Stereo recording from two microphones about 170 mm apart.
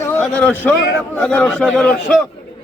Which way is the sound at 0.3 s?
5° left (ahead or behind).